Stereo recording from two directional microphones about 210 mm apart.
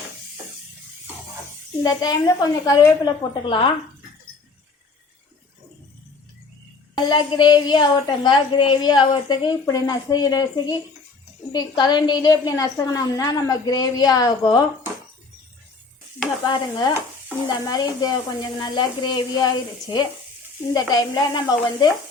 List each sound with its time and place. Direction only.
1.8 s a woman's voice: 20° left (ahead or behind)
6.9 s a woman's voice: 20° left (ahead or behind)
16.5 s a woman's voice: 20° left (ahead or behind)